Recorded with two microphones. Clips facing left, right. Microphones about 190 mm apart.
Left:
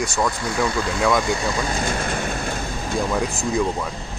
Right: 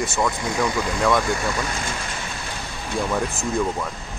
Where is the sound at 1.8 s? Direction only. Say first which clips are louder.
Left 6 dB; 50° left (ahead or behind).